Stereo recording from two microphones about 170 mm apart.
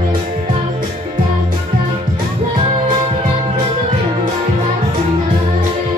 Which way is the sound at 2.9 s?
30° right (ahead or behind).